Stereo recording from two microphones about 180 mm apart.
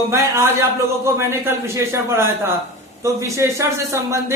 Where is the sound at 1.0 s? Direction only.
15° right (ahead or behind).